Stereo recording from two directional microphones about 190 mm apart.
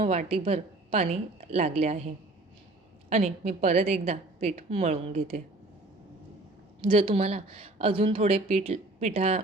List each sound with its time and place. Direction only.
0.0 s a woman's voice: 35° right (ahead or behind)
3.1 s a woman's voice: 40° right (ahead or behind)
6.8 s a woman's voice: 30° right (ahead or behind)